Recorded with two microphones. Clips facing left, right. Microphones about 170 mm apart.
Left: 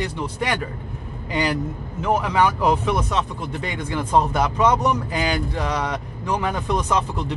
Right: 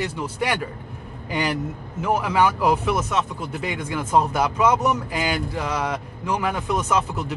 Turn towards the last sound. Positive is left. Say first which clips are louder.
# even
turn(degrees=-5)  # may be behind; listen again after turning